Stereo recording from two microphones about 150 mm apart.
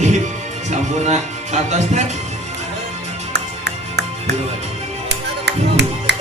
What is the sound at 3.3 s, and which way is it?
Music, 90° right.